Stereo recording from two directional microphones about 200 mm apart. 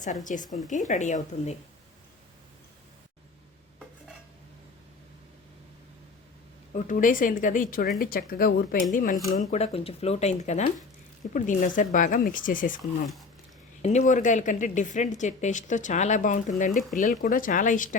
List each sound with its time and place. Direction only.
0.3 s speech: 40° left (ahead or behind)
6.7 s speech: 40° left (ahead or behind)
13.8 s speech: 35° left (ahead or behind)